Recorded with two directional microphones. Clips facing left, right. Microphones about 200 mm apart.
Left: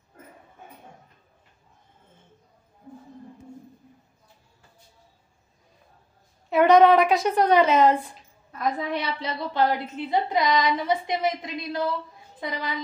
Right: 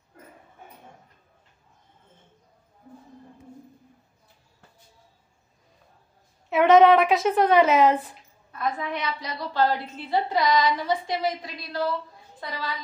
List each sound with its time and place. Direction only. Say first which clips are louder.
6.5 s a woman's voice: even; centre (ahead or behind)
8.5 s a woman's voice: left 2 dB; 35° left (ahead or behind); by 12.7 s 20° left (ahead or behind)